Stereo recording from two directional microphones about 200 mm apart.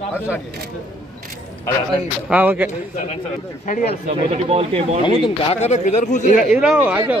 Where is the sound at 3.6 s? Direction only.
40° left (ahead or behind).